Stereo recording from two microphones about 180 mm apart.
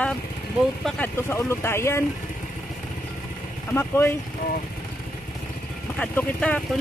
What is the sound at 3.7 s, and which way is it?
Speech, 10° left (ahead or behind).